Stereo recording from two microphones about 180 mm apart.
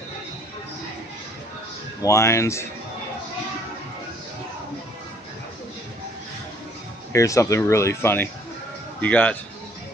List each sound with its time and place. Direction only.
2.0 s speech: 15° left (ahead or behind)
7.1 s speech: 15° left (ahead or behind)